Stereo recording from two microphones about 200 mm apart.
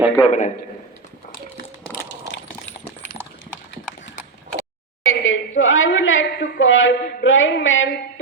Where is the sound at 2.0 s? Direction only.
65° left (ahead or behind).